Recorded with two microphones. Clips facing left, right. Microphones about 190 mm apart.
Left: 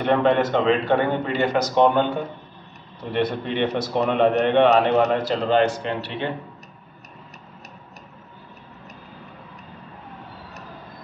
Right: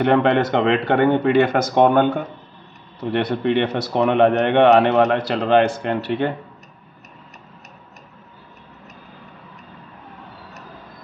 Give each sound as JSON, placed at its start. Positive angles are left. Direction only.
{"t": 0.0, "sound": "speech", "side_deg": -65}
{"t": 3.1, "sound": "speech", "side_deg": -65}